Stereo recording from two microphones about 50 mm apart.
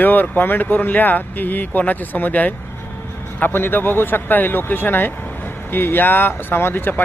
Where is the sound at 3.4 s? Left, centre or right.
Left.